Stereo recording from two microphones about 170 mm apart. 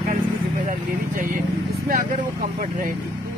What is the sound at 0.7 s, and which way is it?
Speech, 55° right (ahead or behind).